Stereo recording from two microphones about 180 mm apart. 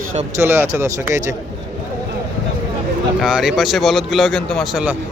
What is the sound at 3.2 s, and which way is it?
Speech, centre (ahead or behind).